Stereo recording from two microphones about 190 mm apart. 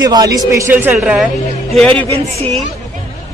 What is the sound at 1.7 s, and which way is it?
Speech, 10° left (ahead or behind).